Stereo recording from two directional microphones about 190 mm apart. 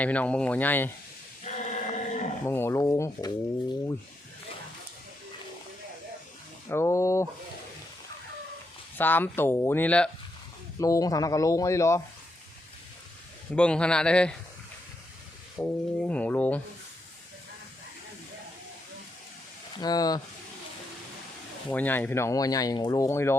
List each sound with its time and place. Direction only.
0.0 s speech: 5° left (ahead or behind)
1.5 s choir: 40° left (ahead or behind)
2.5 s speech: 15° left (ahead or behind)
6.7 s speech: 15° left (ahead or behind)
9.0 s speech: 10° left (ahead or behind)
10.8 s speech: 15° left (ahead or behind)
13.6 s speech: 5° left (ahead or behind)
15.5 s speech: 10° left (ahead or behind)
19.7 s speech: 20° left (ahead or behind)
21.7 s speech: 10° left (ahead or behind)